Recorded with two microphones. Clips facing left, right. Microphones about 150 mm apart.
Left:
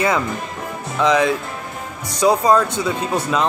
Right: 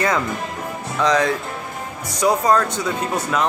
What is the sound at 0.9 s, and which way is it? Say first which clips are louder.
Speech: left 2 dB; 10° left (ahead or behind).